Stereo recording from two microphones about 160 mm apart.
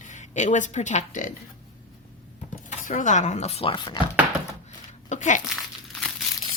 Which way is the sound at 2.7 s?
50° left (ahead or behind).